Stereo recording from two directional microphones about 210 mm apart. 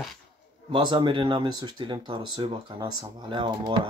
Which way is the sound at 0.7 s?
20° right (ahead or behind).